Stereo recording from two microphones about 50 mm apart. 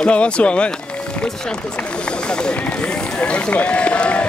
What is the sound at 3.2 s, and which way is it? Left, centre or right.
Speech, left.